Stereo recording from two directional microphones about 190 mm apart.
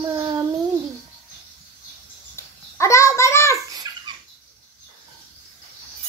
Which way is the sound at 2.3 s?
15° left (ahead or behind).